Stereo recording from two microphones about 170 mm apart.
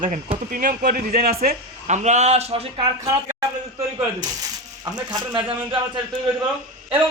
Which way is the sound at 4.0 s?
20° right (ahead or behind).